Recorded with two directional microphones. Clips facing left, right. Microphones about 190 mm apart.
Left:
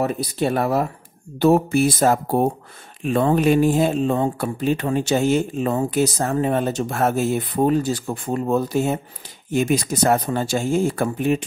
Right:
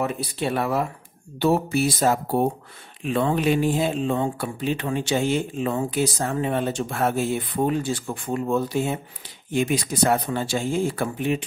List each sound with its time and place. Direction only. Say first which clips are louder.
0.0 s speech: left 4 dB; 40° left (ahead or behind)